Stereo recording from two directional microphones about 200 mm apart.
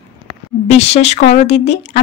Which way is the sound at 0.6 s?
30° left (ahead or behind).